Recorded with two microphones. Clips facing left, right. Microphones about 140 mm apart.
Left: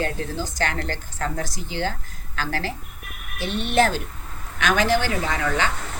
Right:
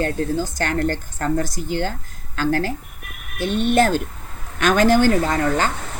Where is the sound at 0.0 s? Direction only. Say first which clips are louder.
Right 5 dB; 50° right (ahead or behind).